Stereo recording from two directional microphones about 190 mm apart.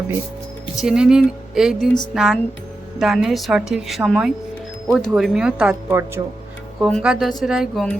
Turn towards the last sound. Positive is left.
turn(degrees=0)  # may be behind; listen again after turning